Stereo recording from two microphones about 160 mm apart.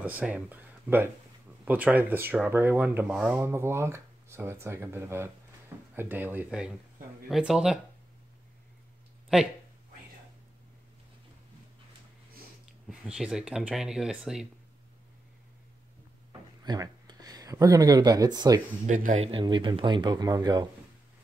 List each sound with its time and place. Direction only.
0.0 s speech: 10° right (ahead or behind)
12.8 s speech: 5° right (ahead or behind)
16.3 s a sound: 25° right (ahead or behind)
18.9 s speech: 55° right (ahead or behind)
19.2 s speech: 30° right (ahead or behind)